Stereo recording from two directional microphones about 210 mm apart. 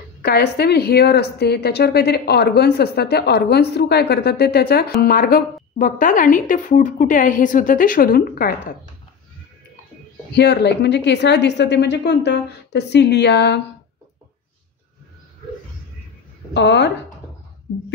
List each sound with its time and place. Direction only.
0.2 s a woman's voice: 50° left (ahead or behind)
10.3 s a woman's voice: 55° left (ahead or behind)
16.5 s a woman's voice: 55° left (ahead or behind)